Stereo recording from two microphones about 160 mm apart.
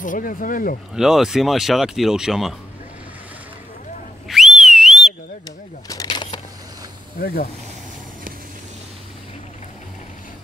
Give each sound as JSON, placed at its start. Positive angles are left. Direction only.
{"t": 0.0, "sound": "speech", "side_deg": 55}
{"t": 0.9, "sound": "speech", "side_deg": -5}
{"t": 4.3, "sound": "whistle", "side_deg": 0}
{"t": 5.9, "sound": "a sound", "side_deg": 25}
{"t": 7.2, "sound": "speech", "side_deg": 70}